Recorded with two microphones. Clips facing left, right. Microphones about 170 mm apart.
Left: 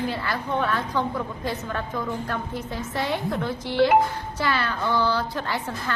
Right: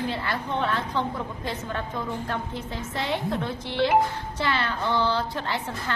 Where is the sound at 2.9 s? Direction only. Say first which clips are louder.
Left 1 dB; 20° right (ahead or behind).